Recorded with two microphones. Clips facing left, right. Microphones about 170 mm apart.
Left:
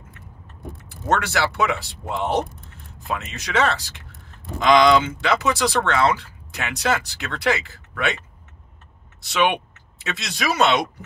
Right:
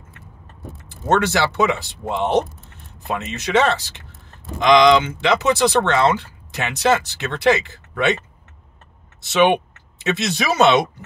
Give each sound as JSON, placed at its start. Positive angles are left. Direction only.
{"t": 0.8, "sound": "speech", "side_deg": -25}
{"t": 9.2, "sound": "speech", "side_deg": -20}